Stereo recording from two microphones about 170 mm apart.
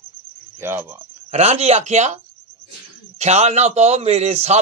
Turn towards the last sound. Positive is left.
turn(degrees=-40)  # may be behind; listen again after turning